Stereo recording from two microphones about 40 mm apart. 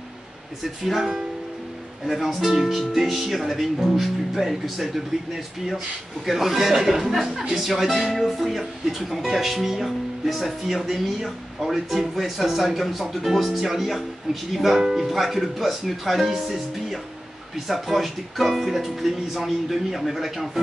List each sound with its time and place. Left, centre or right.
0.8 s music: centre
2.0 s speech: centre